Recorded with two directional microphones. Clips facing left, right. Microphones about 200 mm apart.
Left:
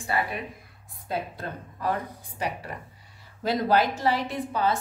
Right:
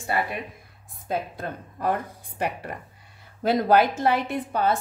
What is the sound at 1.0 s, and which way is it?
A woman's voice, 50° right (ahead or behind).